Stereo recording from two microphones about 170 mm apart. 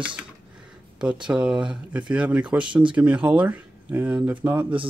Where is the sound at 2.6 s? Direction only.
30° right (ahead or behind).